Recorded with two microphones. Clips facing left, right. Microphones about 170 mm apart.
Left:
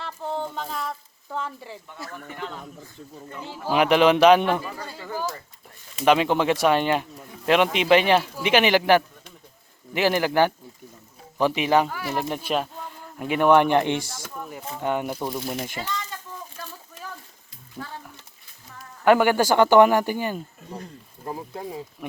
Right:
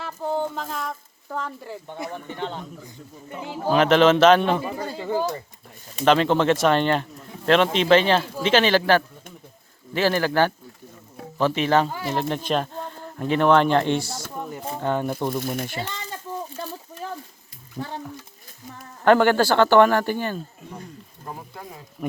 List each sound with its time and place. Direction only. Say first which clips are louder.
0.0 s a sound: right 4 dB; 5° right (ahead or behind)
2.0 s speech: right 5 dB; 25° right (ahead or behind)
2.8 s speech: even; 15° right (ahead or behind)
3.7 s speech: right 1 dB; 15° left (ahead or behind)
4.4 s speech: right 2 dB; 20° right (ahead or behind)
6.1 s speech: right 1 dB; 10° left (ahead or behind)
11.9 s speech: right 2 dB; 20° right (ahead or behind)
12.1 s speech: right 2 dB; 10° left (ahead or behind)
14.4 s a sound: right 3 dB; 25° right (ahead or behind)
14.8 s speech: right 1 dB; 15° left (ahead or behind)
16.6 s a sound: right 7 dB; 30° right (ahead or behind)
17.8 s speech: right 5 dB; 15° right (ahead or behind)
19.0 s speech: right 1 dB; 10° left (ahead or behind)